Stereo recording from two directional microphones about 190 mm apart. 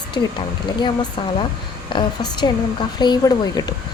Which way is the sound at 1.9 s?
25° left (ahead or behind).